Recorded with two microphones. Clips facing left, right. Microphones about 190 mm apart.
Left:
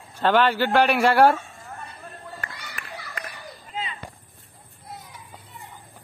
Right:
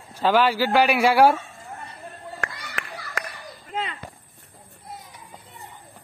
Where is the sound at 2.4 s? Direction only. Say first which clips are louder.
Right 5 dB; 80° right.